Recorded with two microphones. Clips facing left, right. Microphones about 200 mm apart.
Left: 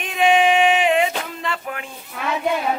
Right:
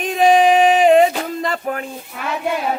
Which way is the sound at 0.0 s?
40° right (ahead or behind).